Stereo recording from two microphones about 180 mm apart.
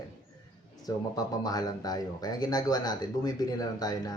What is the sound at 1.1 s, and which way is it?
Speech, 20° left (ahead or behind).